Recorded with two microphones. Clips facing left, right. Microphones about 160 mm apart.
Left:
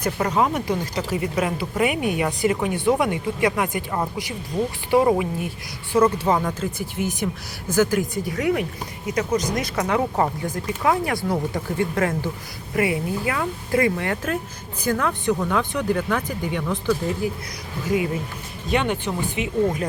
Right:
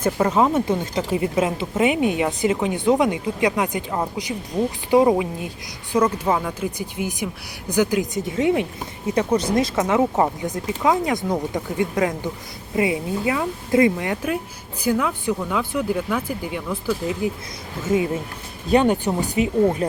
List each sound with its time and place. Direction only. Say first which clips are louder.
0.2 s speech: right 3 dB; 5° right (ahead or behind)
0.9 s a woman's voice: right 3 dB; 25° right (ahead or behind); by 16.9 s 5° right (ahead or behind)
17.8 s a woman's voice: right 2 dB; 25° right (ahead or behind)
18.7 s speech: right 5 dB; 40° right (ahead or behind)